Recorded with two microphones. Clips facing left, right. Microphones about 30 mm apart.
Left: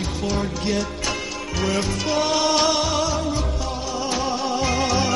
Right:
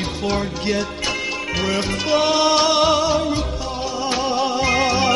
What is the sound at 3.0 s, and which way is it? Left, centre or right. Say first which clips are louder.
Music: right 4 dB; right.